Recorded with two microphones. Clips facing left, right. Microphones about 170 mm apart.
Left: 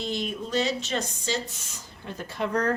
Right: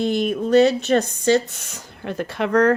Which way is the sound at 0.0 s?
55° right (ahead or behind).